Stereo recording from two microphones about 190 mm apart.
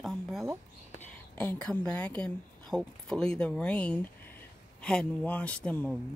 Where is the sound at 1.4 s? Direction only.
10° left (ahead or behind).